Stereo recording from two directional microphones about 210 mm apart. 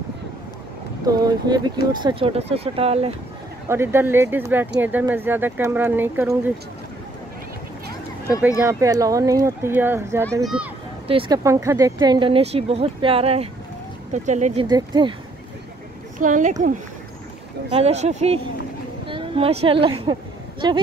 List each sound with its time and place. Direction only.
1.0 s speech: 20° right (ahead or behind)
3.6 s speech: 10° right (ahead or behind)
8.4 s speech: 10° right (ahead or behind)
11.1 s speech: 25° right (ahead or behind)
14.7 s speech: 20° right (ahead or behind)
16.2 s speech: 35° right (ahead or behind)
17.7 s a woman's voice: 30° right (ahead or behind)